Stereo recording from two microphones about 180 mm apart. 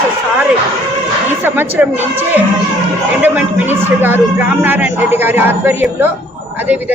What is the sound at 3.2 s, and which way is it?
A man's voice, 10° right (ahead or behind).